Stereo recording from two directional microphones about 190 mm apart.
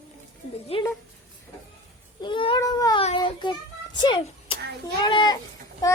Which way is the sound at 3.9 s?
25° left (ahead or behind).